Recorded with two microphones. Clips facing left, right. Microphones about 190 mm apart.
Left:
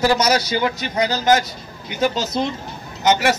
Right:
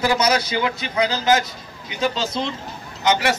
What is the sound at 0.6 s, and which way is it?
Speech, 40° left (ahead or behind).